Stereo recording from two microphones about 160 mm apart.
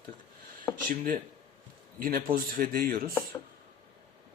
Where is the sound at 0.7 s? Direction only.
10° left (ahead or behind).